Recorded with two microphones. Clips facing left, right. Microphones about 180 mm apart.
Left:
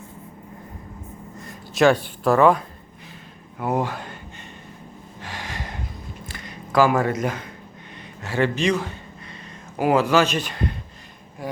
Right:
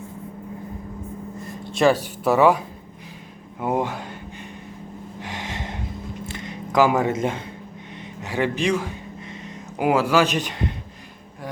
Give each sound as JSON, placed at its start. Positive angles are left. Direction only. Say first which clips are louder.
{"t": 1.7, "sound": "speech", "louder": "left 1 dB", "side_deg": 0}
{"t": 3.6, "sound": "speech", "louder": "even", "side_deg": -20}
{"t": 5.2, "sound": "gasp", "louder": "right 2 dB", "side_deg": -20}
{"t": 6.2, "sound": "biting", "louder": "right 5 dB", "side_deg": -20}
{"t": 8.2, "sound": "a man's voice", "louder": "left 1 dB", "side_deg": -15}